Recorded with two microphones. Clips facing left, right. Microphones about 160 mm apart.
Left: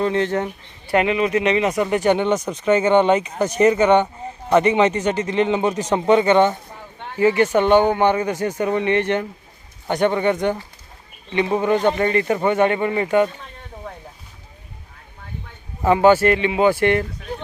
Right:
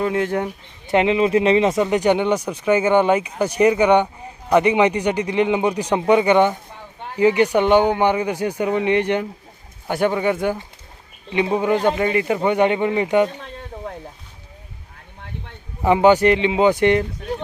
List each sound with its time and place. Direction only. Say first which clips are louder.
0.0 s speech: left 1 dB; 10° right (ahead or behind)
15.8 s speech: even; 15° right (ahead or behind)